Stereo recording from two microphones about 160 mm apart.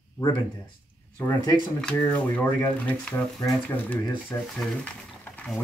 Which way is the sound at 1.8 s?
10° left (ahead or behind).